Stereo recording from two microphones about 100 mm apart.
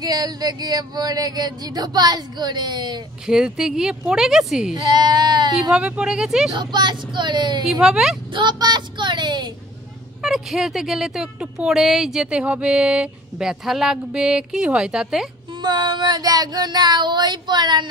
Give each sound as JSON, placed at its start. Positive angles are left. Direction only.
{"t": 0.0, "sound": "speech", "side_deg": -40}
{"t": 3.3, "sound": "a woman's voice", "side_deg": -5}
{"t": 4.7, "sound": "speech", "side_deg": -45}
{"t": 5.7, "sound": "speech", "side_deg": -10}
{"t": 6.5, "sound": "speech", "side_deg": -45}
{"t": 7.6, "sound": "a woman's voice", "side_deg": -5}
{"t": 8.3, "sound": "speech", "side_deg": -50}
{"t": 10.2, "sound": "speech", "side_deg": -5}
{"t": 15.6, "sound": "speech", "side_deg": -45}